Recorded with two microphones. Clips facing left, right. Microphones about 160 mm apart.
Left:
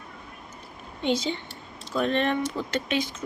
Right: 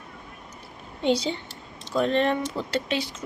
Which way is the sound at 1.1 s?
35° right (ahead or behind).